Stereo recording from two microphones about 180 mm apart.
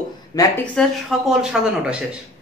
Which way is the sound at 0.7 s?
Centre (ahead or behind).